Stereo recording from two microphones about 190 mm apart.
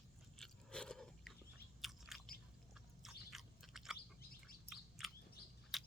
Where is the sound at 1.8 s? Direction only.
Centre (ahead or behind).